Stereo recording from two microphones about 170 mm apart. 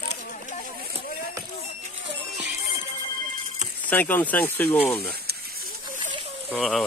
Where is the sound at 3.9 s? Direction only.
10° left (ahead or behind).